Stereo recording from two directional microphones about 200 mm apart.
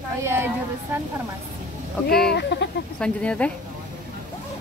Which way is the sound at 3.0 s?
5° left (ahead or behind).